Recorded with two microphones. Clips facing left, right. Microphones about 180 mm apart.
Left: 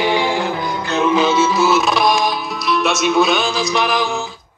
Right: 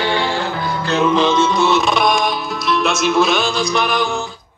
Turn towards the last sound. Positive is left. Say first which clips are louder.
# even
turn(degrees=0)  # may be behind; listen again after turning